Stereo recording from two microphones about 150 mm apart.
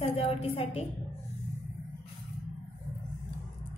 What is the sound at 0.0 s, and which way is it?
Speech, 45° left (ahead or behind).